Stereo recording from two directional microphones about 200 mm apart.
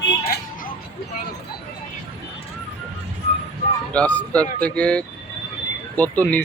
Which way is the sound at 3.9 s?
5° left (ahead or behind).